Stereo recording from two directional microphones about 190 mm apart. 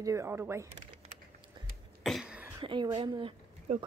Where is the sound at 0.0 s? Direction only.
15° right (ahead or behind).